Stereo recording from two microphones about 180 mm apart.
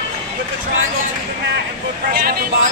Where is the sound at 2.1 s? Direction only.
55° right (ahead or behind).